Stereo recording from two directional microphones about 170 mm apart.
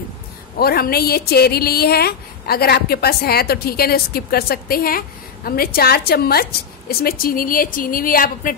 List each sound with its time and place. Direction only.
0.6 s speech: 60° left (ahead or behind)